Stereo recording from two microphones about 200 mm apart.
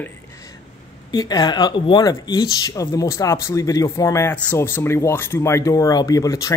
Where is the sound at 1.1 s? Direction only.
20° left (ahead or behind).